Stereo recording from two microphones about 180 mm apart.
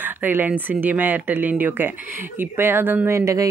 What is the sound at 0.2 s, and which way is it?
Speech, 10° right (ahead or behind).